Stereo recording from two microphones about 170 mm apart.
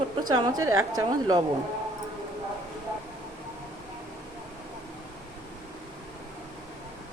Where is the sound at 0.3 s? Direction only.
25° right (ahead or behind).